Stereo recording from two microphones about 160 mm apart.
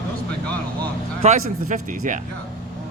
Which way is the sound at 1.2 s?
50° right (ahead or behind).